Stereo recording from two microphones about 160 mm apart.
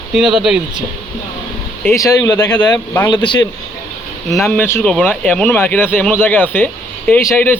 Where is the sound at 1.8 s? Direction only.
20° left (ahead or behind).